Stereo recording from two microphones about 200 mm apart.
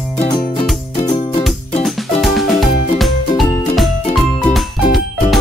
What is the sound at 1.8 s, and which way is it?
Music, centre (ahead or behind).